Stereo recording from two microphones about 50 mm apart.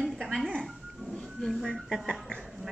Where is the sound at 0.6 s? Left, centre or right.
Centre.